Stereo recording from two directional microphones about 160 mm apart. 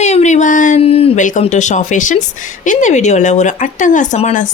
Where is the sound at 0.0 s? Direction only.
45° left (ahead or behind).